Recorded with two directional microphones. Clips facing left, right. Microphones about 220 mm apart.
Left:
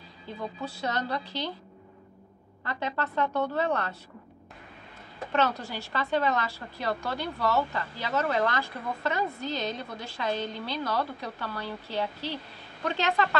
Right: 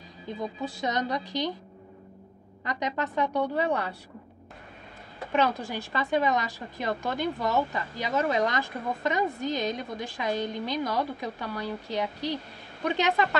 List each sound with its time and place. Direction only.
0.3 s speech: 15° right (ahead or behind)
2.6 s speech: 15° right (ahead or behind)
5.3 s speech: 15° right (ahead or behind)